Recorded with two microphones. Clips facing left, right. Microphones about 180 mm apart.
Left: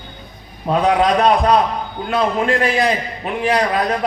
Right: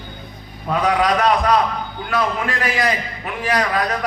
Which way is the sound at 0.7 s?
30° left (ahead or behind).